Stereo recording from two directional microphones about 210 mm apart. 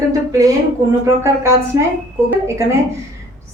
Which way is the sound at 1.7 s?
15° right (ahead or behind).